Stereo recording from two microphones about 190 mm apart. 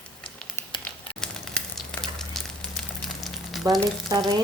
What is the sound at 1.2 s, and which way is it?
Sizzle, 5° left (ahead or behind).